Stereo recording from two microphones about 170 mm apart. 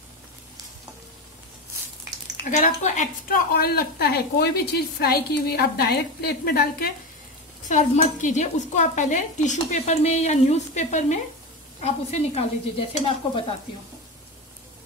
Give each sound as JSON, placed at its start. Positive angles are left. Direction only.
{"t": 2.5, "sound": "speech", "side_deg": 45}
{"t": 3.5, "sound": "a woman's voice", "side_deg": 65}
{"t": 7.6, "sound": "speech", "side_deg": 45}